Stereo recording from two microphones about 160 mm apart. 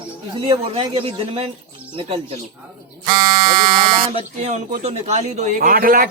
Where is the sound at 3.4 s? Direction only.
60° right (ahead or behind).